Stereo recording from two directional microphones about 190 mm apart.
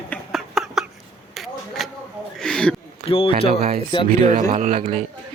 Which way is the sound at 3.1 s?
30° left (ahead or behind).